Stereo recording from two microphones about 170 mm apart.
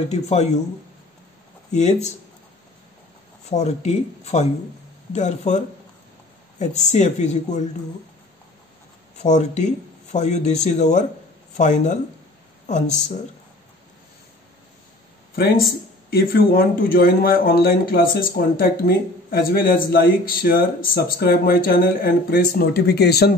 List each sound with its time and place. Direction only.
0.1 s speech: 40° left (ahead or behind)
1.7 s speech: 45° left (ahead or behind)
3.4 s speech: 40° left (ahead or behind)
6.6 s speech: 45° left (ahead or behind)
9.2 s speech: 45° left (ahead or behind)
15.3 s speech: 65° left (ahead or behind)